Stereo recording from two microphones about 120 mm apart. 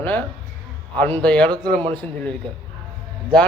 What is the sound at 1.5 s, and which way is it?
Speech, 40° right (ahead or behind).